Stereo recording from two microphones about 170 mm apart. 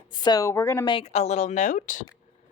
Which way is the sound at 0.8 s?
35° left (ahead or behind).